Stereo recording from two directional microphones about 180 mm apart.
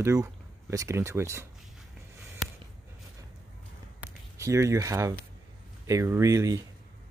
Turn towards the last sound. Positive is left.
turn(degrees=-15)  # may be behind; listen again after turning